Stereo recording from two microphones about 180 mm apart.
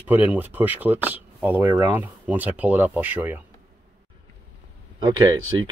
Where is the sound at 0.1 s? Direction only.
10° right (ahead or behind).